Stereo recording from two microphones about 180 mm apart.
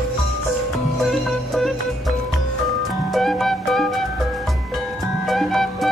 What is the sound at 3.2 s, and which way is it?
Music, centre (ahead or behind).